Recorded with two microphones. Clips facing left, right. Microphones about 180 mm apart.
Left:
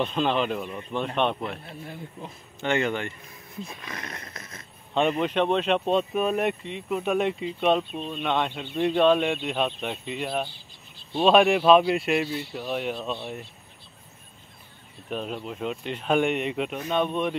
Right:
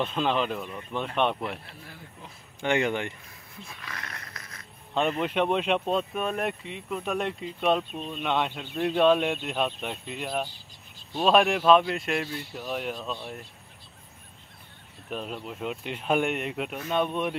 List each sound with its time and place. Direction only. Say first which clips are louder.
0.0 s speech: left 2 dB; 5° right (ahead or behind)
1.7 s speech: left 8 dB; 20° left (ahead or behind)
2.6 s speech: even; 15° right (ahead or behind)
3.6 s speech: left 2 dB; 20° left (ahead or behind)
5.2 s speech: left 2 dB; 5° right (ahead or behind)
15.0 s speech: left 3 dB; centre (ahead or behind)